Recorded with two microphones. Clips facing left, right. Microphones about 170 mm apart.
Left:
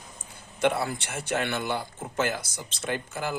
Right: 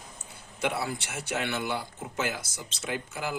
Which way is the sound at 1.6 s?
5° right (ahead or behind).